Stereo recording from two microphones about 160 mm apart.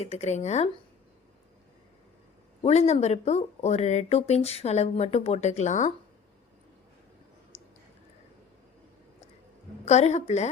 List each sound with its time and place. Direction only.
0.0 s speech: 40° left (ahead or behind)
2.6 s speech: 40° left (ahead or behind)
9.8 s speech: 45° left (ahead or behind)